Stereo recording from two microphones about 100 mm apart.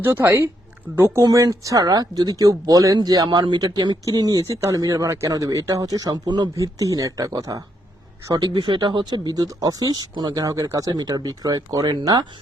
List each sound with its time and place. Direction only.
0.0 s a woman's voice: 20° right (ahead or behind); by 6.5 s 45° right (ahead or behind)
6.6 s speech: 35° right (ahead or behind)